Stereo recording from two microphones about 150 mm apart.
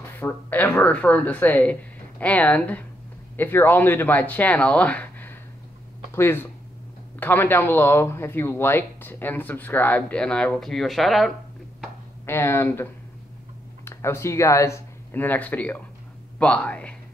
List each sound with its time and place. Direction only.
0.2 s a man's voice: 10° left (ahead or behind)
12.3 s a man's voice: 15° left (ahead or behind)
13.8 s a man's voice: 20° left (ahead or behind)